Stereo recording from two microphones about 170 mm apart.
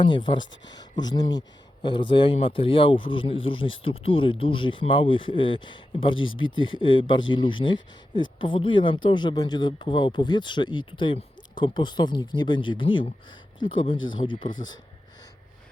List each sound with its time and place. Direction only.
0.0 s speech: 25° left (ahead or behind)